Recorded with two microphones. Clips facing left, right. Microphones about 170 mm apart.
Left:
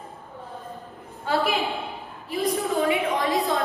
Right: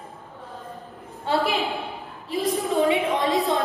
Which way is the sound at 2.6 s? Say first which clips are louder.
Right 4 dB; 20° right (ahead or behind).